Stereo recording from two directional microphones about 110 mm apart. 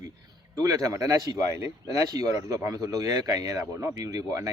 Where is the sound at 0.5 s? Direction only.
35° right (ahead or behind).